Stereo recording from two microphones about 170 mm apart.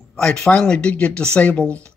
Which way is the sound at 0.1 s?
5° left (ahead or behind).